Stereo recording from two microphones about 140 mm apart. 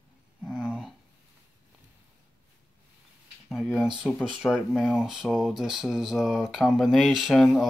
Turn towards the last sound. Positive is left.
turn(degrees=0)  # may be behind; listen again after turning